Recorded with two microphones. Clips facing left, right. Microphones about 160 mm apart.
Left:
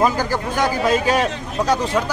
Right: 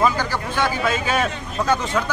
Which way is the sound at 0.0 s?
40° left (ahead or behind).